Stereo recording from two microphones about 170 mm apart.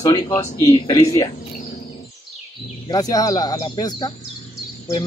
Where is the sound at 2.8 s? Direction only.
25° left (ahead or behind).